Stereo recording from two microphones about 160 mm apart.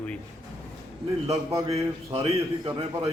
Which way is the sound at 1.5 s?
20° right (ahead or behind).